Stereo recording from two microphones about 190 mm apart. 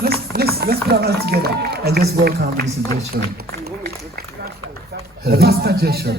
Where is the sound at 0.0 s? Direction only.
55° right (ahead or behind).